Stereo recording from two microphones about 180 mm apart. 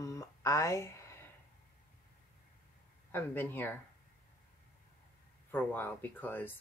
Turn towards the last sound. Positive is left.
turn(degrees=10)  # may be behind; listen again after turning